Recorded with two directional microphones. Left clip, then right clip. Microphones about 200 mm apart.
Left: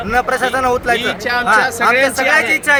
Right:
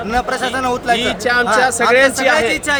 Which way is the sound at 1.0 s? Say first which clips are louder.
Right 2 dB; 50° right (ahead or behind).